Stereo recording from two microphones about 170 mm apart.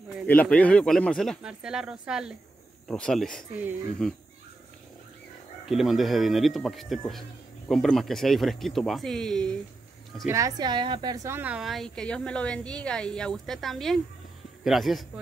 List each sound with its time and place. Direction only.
0.3 s speech: 10° left (ahead or behind)
5.7 s speech: centre (ahead or behind)
10.2 s a woman's voice: 20° right (ahead or behind)
11.3 s speech: 5° right (ahead or behind)